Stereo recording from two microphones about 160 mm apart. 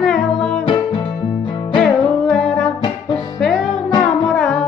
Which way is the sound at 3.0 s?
25° left (ahead or behind).